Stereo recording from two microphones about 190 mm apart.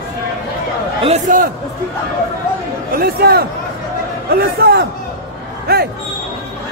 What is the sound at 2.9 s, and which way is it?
A man's voice, 55° right (ahead or behind).